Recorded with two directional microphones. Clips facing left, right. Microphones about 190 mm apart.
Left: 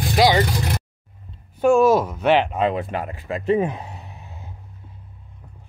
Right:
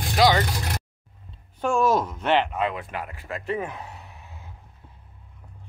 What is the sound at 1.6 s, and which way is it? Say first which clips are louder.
Speech: left 7 dB; 5° left (ahead or behind).